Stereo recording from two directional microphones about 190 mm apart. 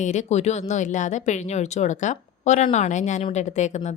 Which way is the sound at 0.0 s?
35° left (ahead or behind).